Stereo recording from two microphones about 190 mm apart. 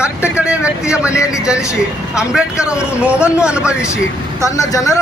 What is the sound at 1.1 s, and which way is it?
Speech, 15° left (ahead or behind).